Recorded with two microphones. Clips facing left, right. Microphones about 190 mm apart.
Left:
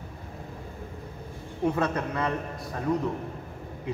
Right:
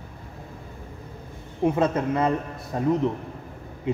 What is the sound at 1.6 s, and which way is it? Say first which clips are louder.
A man's voice: right 4 dB; 20° right (ahead or behind).